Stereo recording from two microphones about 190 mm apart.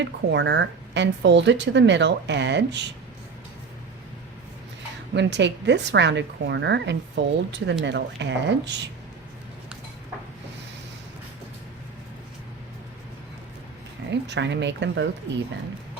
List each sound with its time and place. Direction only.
0.0 s a woman's voice: 65° right (ahead or behind)
5.1 s a woman's voice: 65° right (ahead or behind)
14.1 s a woman's voice: 65° right (ahead or behind)